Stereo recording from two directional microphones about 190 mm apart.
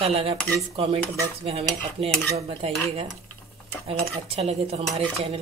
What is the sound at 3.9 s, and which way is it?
Cutlery, 30° right (ahead or behind).